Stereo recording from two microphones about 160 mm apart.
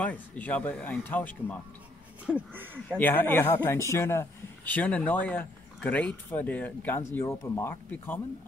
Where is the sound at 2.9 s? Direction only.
10° left (ahead or behind).